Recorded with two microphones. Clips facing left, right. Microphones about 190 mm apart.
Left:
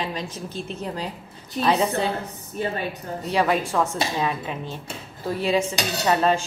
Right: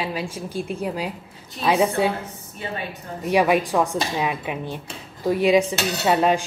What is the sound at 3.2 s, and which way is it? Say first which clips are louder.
Speech: right 4 dB; 15° right (ahead or behind).